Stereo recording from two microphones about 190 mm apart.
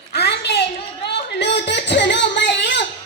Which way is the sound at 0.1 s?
60° left (ahead or behind).